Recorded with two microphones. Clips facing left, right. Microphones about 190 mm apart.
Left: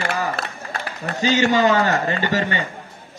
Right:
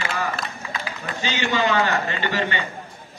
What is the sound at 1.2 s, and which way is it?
A man's voice, 40° left (ahead or behind).